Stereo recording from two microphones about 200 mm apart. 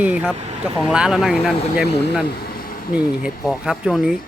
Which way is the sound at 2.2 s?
50° left (ahead or behind).